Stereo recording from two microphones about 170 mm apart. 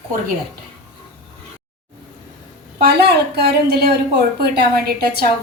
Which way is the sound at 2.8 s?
75° right (ahead or behind).